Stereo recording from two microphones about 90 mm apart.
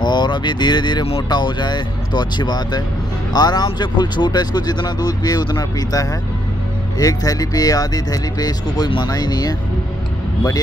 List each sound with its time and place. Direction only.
0.0 s speech: 55° left (ahead or behind)